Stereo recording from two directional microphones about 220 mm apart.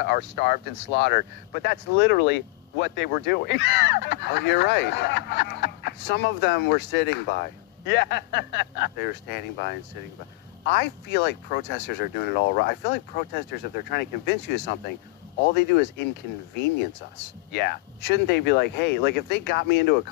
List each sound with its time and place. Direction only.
0.0 s speech: 45° left (ahead or behind)
17.5 s speech: 50° left (ahead or behind)